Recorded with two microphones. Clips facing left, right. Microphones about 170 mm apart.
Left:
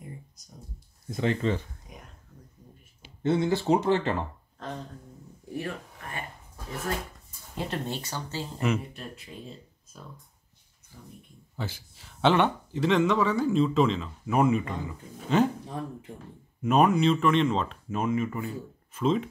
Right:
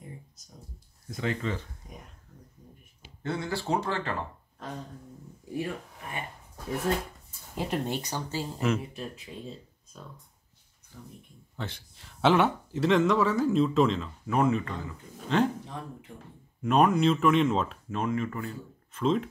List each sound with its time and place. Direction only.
1.1 s speech: 30° left (ahead or behind)
3.2 s speech: 20° left (ahead or behind)
5.6 s speech: 15° right (ahead or behind)
7.5 s speech: 15° right (ahead or behind)
10.9 s a sound: 5° left (ahead or behind)
11.5 s speech: 5° left (ahead or behind)
16.6 s speech: centre (ahead or behind)
17.9 s speech: 5° left (ahead or behind)